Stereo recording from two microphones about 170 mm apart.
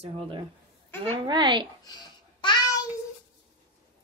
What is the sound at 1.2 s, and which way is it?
Speech, 25° right (ahead or behind).